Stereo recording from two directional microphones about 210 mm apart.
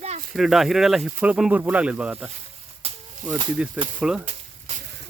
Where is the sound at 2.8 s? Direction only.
25° right (ahead or behind).